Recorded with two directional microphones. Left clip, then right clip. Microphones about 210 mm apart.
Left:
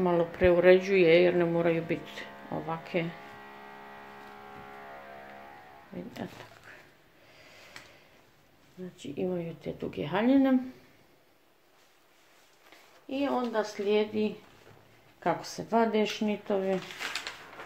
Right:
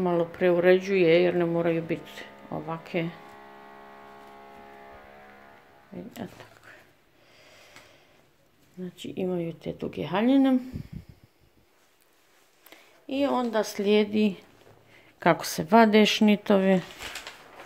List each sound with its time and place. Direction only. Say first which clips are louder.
0.0 s speech: right 1 dB; 10° right (ahead or behind)
5.9 s speech: right 1 dB; 10° right (ahead or behind)
6.7 s a sound: even; 10° right (ahead or behind)
8.9 s speech: right 3 dB; 35° right (ahead or behind)
12.6 s speech: right 4 dB; 45° right (ahead or behind)